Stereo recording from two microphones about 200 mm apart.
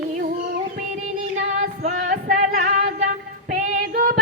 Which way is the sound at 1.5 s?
35° right (ahead or behind).